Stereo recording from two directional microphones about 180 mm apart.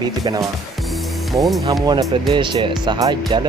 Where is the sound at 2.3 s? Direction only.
25° right (ahead or behind).